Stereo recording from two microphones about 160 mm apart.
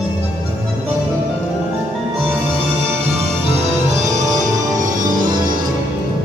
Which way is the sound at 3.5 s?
45° right (ahead or behind).